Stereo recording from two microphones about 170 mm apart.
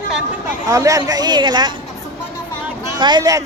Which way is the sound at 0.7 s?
20° right (ahead or behind).